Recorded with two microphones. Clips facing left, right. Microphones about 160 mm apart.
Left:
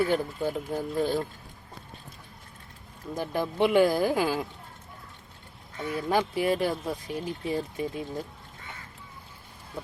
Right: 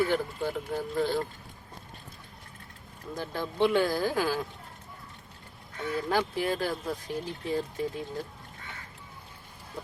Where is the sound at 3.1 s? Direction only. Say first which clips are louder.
Left 5 dB; 15° left (ahead or behind).